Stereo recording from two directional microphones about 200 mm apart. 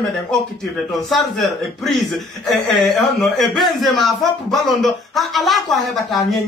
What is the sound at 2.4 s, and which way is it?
Speech, centre (ahead or behind).